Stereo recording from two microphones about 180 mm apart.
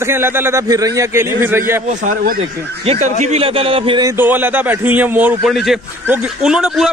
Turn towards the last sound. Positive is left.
turn(degrees=0)  # may be behind; listen again after turning